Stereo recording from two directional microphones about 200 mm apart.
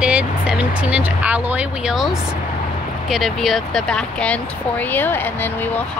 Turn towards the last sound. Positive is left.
turn(degrees=10)  # may be behind; listen again after turning